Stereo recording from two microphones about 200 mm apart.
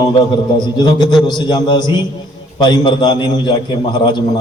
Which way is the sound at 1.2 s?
20° left (ahead or behind).